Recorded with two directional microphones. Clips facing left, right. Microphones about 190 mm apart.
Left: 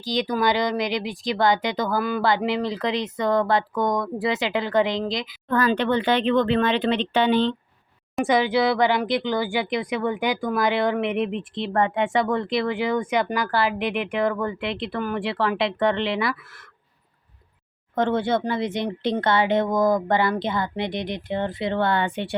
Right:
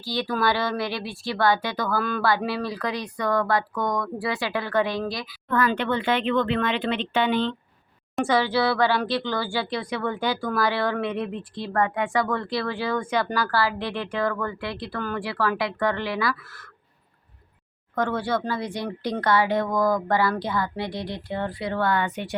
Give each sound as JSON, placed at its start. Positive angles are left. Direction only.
{"t": 0.0, "sound": "speech", "side_deg": 20}
{"t": 5.5, "sound": "speech", "side_deg": 35}
{"t": 8.2, "sound": "speech", "side_deg": 15}
{"t": 17.9, "sound": "speech", "side_deg": 25}